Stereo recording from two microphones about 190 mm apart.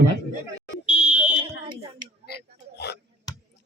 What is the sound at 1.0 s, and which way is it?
Fire alarm, 5° right (ahead or behind).